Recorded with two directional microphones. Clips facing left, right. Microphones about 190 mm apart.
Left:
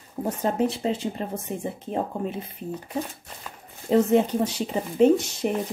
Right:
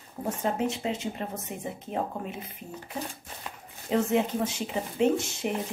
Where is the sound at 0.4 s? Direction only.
35° left (ahead or behind).